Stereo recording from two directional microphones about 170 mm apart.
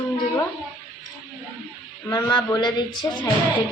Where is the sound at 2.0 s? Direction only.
25° left (ahead or behind).